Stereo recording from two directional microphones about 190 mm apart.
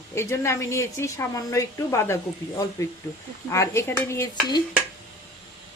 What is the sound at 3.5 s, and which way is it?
Speech, 15° left (ahead or behind).